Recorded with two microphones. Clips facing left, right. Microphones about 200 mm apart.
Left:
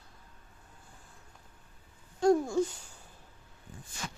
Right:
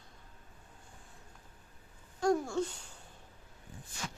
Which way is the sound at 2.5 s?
5° left (ahead or behind).